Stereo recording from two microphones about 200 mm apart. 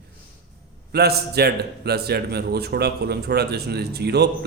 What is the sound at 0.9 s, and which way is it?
A man's voice, 55° right (ahead or behind).